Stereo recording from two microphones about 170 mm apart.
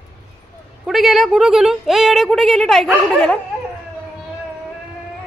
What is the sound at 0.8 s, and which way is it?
A woman's voice, centre (ahead or behind).